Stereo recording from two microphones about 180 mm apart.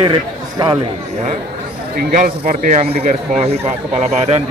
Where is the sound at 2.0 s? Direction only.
55° right (ahead or behind).